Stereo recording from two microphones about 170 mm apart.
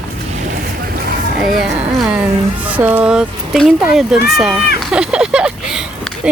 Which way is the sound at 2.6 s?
10° right (ahead or behind).